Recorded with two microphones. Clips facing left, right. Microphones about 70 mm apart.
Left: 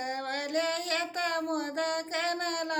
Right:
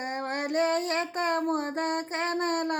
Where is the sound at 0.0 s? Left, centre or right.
Right.